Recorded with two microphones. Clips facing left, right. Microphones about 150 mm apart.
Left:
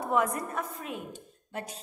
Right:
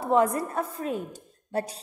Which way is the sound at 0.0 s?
30° right (ahead or behind).